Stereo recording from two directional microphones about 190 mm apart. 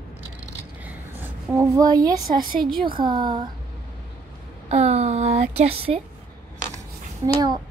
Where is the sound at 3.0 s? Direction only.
25° right (ahead or behind).